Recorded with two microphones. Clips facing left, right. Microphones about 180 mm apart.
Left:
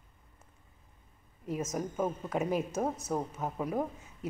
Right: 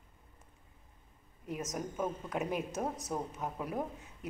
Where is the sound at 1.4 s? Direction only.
Centre (ahead or behind).